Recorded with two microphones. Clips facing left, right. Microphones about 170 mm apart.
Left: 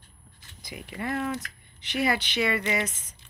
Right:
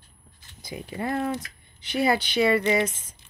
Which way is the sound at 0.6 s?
30° right (ahead or behind).